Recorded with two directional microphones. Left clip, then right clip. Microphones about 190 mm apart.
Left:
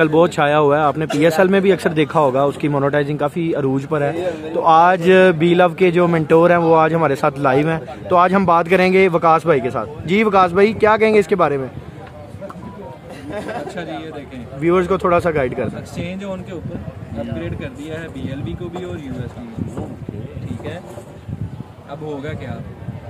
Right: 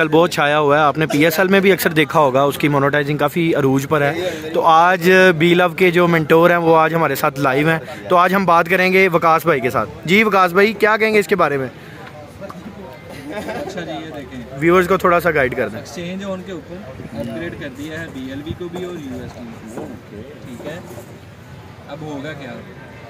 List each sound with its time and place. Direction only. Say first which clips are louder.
0.0 s speech: even; 5° right (ahead or behind)
13.3 s speech: even; 25° left (ahead or behind)
14.6 s speech: right 3 dB; centre (ahead or behind)
17.4 s speech: right 1 dB; 5° left (ahead or behind)